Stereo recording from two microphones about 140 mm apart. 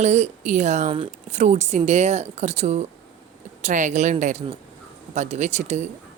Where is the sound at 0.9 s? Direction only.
45° right (ahead or behind).